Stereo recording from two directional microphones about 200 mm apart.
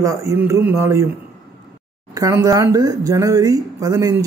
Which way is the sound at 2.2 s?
15° right (ahead or behind).